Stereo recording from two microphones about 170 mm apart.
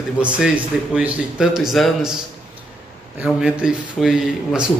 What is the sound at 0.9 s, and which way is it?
Speech, 5° right (ahead or behind).